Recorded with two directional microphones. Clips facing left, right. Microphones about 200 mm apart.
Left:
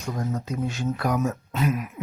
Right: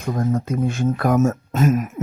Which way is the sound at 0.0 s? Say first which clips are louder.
Right 7 dB; 50° right (ahead or behind).